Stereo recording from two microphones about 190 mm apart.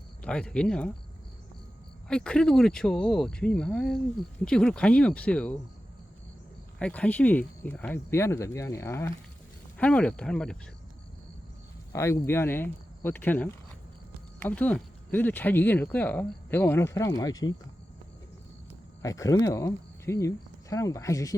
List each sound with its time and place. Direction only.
0.2 s speech: 5° left (ahead or behind)
2.0 s speech: 5° left (ahead or behind)
6.7 s speech: 5° left (ahead or behind)
11.9 s speech: 15° left (ahead or behind)
19.0 s speech: 20° left (ahead or behind)